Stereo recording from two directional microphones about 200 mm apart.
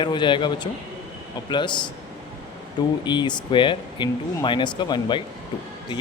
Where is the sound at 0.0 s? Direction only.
25° left (ahead or behind).